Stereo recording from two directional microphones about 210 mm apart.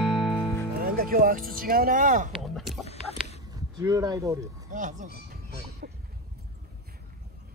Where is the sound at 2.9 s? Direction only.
30° left (ahead or behind).